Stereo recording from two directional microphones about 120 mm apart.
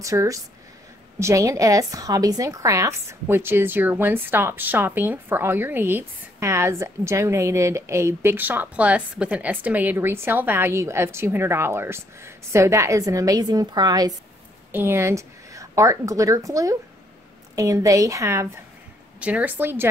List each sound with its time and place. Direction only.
0.0 s a woman's voice: 25° right (ahead or behind)
14.7 s a woman's voice: 20° right (ahead or behind)
19.1 s speech: 10° right (ahead or behind)